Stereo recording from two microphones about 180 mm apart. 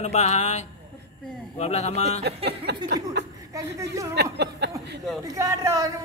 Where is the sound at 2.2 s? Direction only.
65° right (ahead or behind).